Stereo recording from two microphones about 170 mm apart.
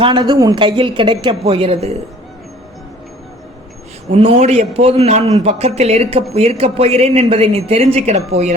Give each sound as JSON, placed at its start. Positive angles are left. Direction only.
{"t": 0.0, "sound": "a man's voice", "side_deg": -25}
{"t": 4.1, "sound": "a man's voice", "side_deg": -40}